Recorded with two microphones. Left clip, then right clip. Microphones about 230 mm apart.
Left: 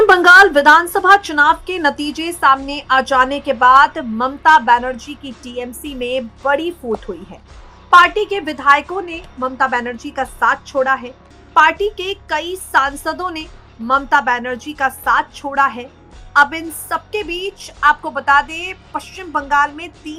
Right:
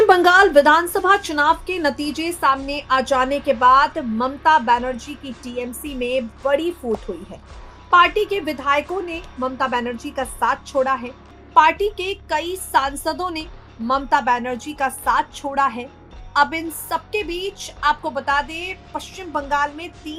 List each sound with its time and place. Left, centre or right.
0.0 s a woman's voice: centre